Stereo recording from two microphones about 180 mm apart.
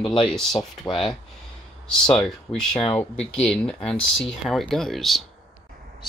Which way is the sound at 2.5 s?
30° left (ahead or behind).